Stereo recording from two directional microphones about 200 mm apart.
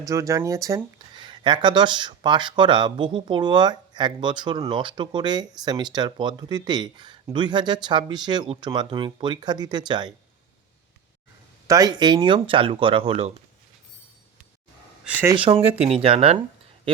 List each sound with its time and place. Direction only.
0.0 s speech: 15° right (ahead or behind)
11.7 s speech: 20° right (ahead or behind)
15.0 s speech: 10° right (ahead or behind)
15.8 s speech: 30° right (ahead or behind)